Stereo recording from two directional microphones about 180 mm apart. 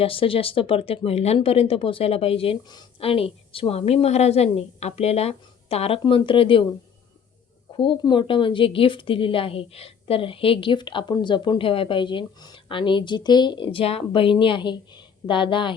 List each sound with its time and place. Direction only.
0.0 s speech: 30° left (ahead or behind)
7.8 s a woman's voice: 25° left (ahead or behind)